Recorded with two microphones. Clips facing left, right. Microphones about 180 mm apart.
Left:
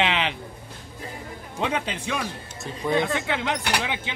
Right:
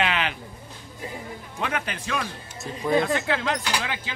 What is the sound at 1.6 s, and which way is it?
Speech, 20° left (ahead or behind).